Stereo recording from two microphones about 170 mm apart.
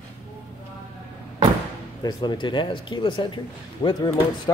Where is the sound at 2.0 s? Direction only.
25° left (ahead or behind).